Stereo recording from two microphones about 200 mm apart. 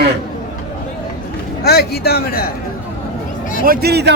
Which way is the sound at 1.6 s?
50° left (ahead or behind).